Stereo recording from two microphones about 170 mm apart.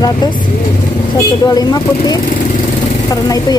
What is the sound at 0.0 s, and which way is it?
A woman's voice, 25° left (ahead or behind).